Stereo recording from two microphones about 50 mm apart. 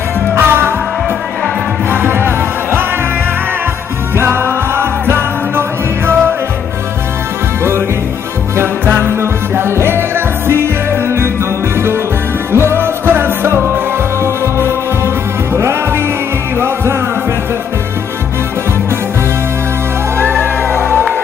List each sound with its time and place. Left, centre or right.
0.3 s music: right
1.9 s music: right
4.2 s music: right
8.5 s music: right
12.5 s music: right
16.5 s music: right
20.2 s music: right